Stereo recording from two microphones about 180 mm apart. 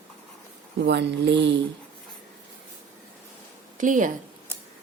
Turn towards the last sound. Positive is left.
turn(degrees=-45)  # may be behind; listen again after turning